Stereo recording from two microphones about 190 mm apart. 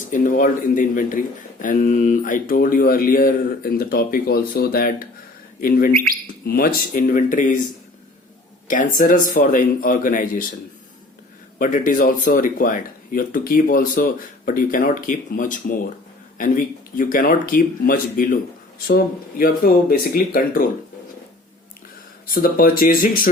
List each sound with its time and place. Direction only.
0.1 s speech: 45° left (ahead or behind)
8.6 s speech: 45° left (ahead or behind)
11.6 s speech: 45° left (ahead or behind)
22.4 s speech: 50° left (ahead or behind)